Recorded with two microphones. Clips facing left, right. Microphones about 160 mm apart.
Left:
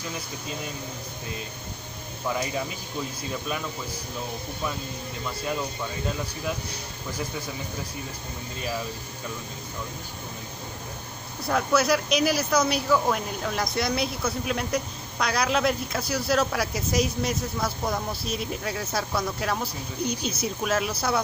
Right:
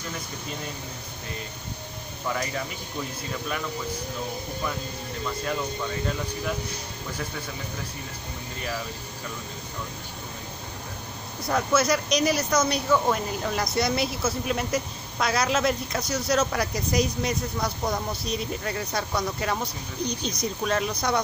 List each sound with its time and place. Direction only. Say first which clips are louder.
2.2 s speech: left 1 dB; 15° left (ahead or behind)
11.4 s speech: even; centre (ahead or behind)